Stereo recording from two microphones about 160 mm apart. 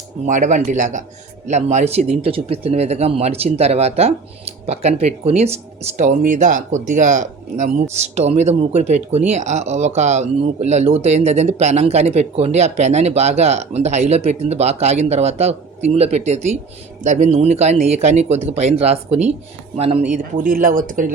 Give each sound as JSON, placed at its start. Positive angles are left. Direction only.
{"t": 0.3, "sound": "speech", "side_deg": -50}